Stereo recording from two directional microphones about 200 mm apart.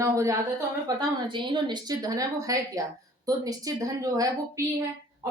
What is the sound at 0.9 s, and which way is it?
Speech, 20° right (ahead or behind).